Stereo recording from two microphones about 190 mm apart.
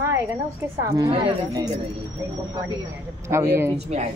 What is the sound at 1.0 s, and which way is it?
Speech, 20° right (ahead or behind).